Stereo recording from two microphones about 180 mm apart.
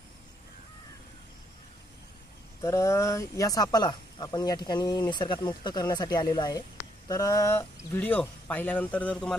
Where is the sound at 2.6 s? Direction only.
15° left (ahead or behind).